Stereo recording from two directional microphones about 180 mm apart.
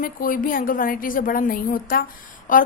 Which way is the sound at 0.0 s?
50° left (ahead or behind).